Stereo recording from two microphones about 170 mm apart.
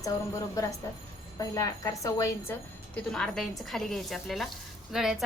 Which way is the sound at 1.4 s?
20° left (ahead or behind).